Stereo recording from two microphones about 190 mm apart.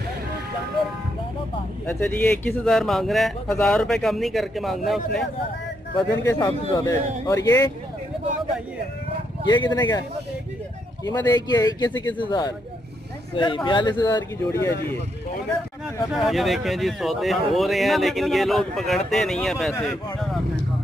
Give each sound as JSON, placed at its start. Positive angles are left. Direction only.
{"t": 2.0, "sound": "speech", "side_deg": 10}
{"t": 6.2, "sound": "speech", "side_deg": 20}
{"t": 9.5, "sound": "speech", "side_deg": 25}
{"t": 11.1, "sound": "speech", "side_deg": 20}
{"t": 16.1, "sound": "speech", "side_deg": 0}